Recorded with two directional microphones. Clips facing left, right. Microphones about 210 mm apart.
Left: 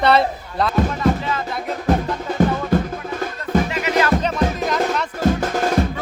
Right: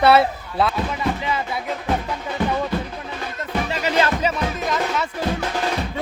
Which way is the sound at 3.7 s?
30° right (ahead or behind).